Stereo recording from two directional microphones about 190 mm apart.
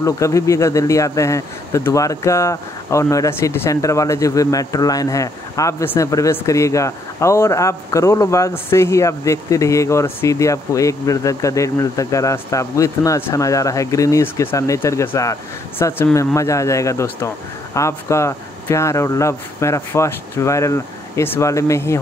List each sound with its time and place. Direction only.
0.0 s speech: 15° left (ahead or behind)